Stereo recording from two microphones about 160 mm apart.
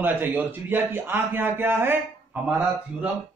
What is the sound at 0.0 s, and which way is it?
A man's voice, 10° right (ahead or behind).